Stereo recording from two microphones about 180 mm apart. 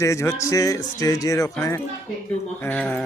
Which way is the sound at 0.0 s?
15° left (ahead or behind).